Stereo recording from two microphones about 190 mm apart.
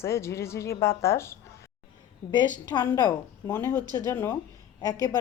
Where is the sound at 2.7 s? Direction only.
20° left (ahead or behind).